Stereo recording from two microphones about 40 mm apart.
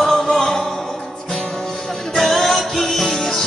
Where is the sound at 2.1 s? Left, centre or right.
Centre.